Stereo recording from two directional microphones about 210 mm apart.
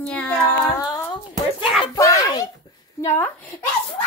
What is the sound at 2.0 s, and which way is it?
Speech, 15° left (ahead or behind).